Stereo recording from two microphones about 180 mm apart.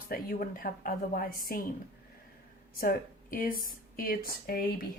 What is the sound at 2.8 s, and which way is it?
Speech, 50° left (ahead or behind).